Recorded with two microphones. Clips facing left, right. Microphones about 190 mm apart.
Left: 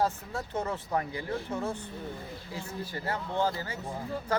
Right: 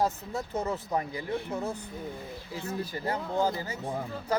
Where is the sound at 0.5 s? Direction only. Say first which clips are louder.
Right 1 dB; 10° right (ahead or behind).